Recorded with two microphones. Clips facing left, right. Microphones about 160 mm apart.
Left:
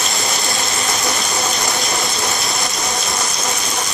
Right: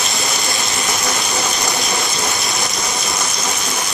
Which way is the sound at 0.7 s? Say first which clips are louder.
Even; centre (ahead or behind).